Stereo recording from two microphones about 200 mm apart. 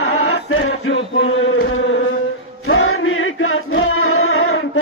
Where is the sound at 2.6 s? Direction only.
90° left.